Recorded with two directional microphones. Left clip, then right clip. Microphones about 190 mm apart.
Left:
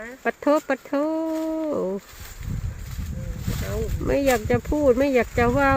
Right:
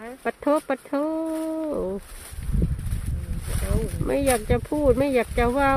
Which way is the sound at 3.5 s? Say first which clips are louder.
Even; 45° right (ahead or behind).